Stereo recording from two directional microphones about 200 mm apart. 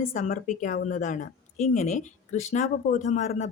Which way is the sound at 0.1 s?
40° left (ahead or behind).